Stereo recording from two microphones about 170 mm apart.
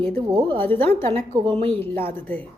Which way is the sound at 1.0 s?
35° right (ahead or behind).